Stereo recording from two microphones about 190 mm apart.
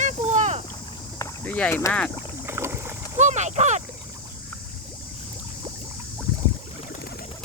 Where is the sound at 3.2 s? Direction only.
40° right (ahead or behind).